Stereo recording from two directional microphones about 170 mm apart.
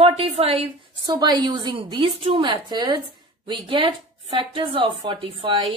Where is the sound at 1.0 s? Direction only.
25° right (ahead or behind).